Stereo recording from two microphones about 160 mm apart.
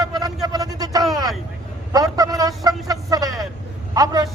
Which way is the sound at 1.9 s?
25° right (ahead or behind).